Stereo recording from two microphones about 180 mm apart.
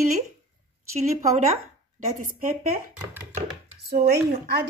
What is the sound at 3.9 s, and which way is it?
Speech, 60° right (ahead or behind).